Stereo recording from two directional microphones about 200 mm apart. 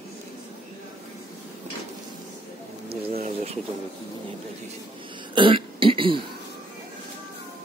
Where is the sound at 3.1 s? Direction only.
30° right (ahead or behind).